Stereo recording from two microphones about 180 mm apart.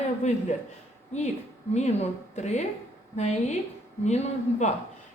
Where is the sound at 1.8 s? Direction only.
40° left (ahead or behind).